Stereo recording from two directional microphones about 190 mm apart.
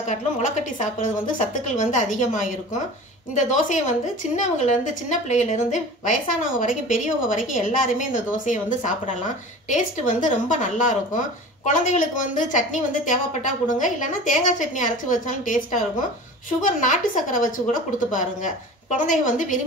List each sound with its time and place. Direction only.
0.1 s a woman's voice: 40° left (ahead or behind)